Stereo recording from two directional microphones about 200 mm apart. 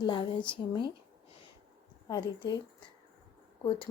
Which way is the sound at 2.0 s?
20° left (ahead or behind).